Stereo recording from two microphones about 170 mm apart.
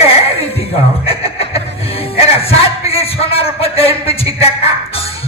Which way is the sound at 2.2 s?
35° left (ahead or behind).